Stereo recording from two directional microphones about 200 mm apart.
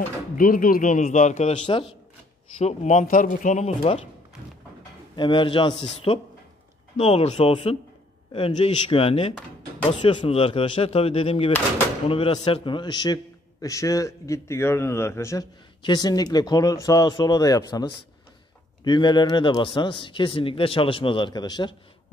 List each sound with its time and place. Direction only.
0.4 s speech: 45° left (ahead or behind)
2.6 s speech: 35° left (ahead or behind)
5.1 s a man's voice: 25° left (ahead or behind)